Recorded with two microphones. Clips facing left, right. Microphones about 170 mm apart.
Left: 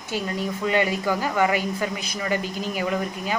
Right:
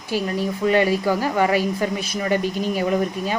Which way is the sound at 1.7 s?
25° right (ahead or behind).